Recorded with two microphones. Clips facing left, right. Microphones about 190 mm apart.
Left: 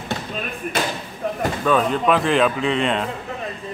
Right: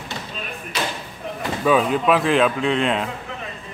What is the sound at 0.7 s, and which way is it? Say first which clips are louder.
Slam: left 2 dB; 50° left (ahead or behind).